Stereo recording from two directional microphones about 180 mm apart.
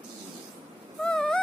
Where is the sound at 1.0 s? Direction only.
5° left (ahead or behind).